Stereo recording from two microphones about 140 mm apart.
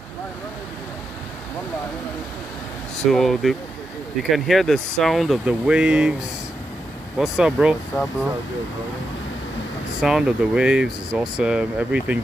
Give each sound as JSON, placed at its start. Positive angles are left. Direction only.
{"t": 3.1, "sound": "speech", "side_deg": 0}
{"t": 7.2, "sound": "speech", "side_deg": -5}
{"t": 10.0, "sound": "speech", "side_deg": -5}